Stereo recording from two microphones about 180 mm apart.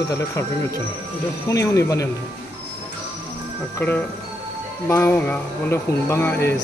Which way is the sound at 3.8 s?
10° left (ahead or behind).